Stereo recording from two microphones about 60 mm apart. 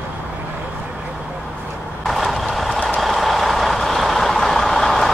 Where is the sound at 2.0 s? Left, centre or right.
Centre.